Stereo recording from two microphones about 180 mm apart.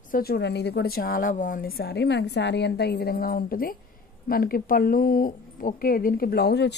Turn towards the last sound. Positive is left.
turn(degrees=65)  # may be behind; listen again after turning